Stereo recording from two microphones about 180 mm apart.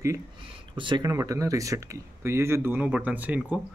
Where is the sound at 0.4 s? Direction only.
30° right (ahead or behind).